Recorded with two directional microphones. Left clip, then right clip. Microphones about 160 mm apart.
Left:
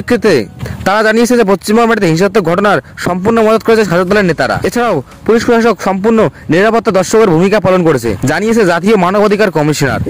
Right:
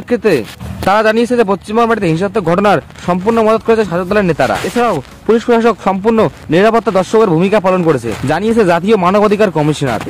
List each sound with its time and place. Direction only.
0.1 s speech: 45° left (ahead or behind)